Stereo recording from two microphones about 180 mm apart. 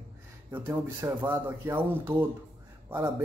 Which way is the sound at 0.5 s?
10° right (ahead or behind).